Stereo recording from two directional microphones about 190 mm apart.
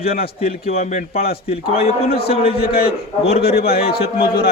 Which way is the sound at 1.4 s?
30° left (ahead or behind).